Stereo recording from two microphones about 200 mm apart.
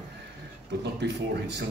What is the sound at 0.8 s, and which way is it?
Speech, 60° right (ahead or behind).